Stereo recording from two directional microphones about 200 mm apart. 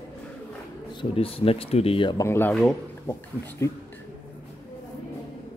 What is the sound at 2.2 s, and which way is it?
Speech, 10° left (ahead or behind).